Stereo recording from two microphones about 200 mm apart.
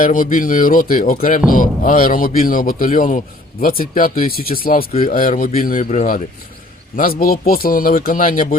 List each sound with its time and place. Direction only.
0.0 s speech: 40° left (ahead or behind)